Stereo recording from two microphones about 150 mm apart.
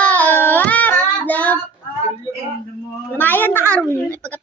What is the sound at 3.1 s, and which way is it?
A woman's voice, 10° left (ahead or behind).